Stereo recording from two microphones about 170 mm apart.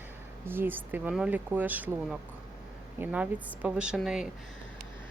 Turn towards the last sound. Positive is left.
turn(degrees=-5)  # may be behind; listen again after turning